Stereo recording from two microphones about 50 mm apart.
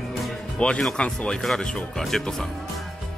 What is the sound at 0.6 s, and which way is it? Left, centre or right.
Speech, left.